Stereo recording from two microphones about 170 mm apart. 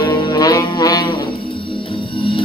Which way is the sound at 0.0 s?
20° left (ahead or behind).